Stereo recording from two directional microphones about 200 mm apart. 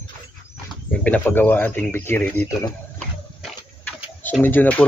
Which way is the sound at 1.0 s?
10° left (ahead or behind).